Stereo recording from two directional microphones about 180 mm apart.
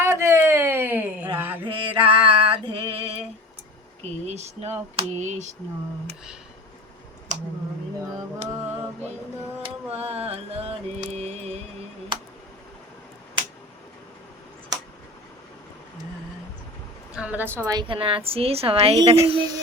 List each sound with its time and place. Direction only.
0.0 s a sound: 15° right (ahead or behind)
1.6 s music: 30° right (ahead or behind)
4.3 s a woman's voice: 40° right (ahead or behind)
9.6 s mantra: 35° right (ahead or behind)
17.2 s a woman's voice: 10° right (ahead or behind); by 19.5 s 30° right (ahead or behind)